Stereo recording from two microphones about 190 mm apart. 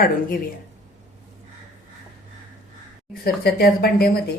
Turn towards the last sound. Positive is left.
turn(degrees=55)  # may be behind; listen again after turning